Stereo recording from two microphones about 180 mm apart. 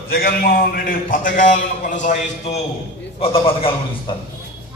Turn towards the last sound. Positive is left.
turn(degrees=30)  # may be behind; listen again after turning